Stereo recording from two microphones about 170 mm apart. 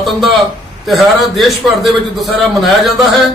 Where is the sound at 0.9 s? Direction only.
Centre (ahead or behind).